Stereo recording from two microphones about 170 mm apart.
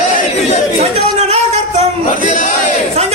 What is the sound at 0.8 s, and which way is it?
Chatter, 40° right (ahead or behind).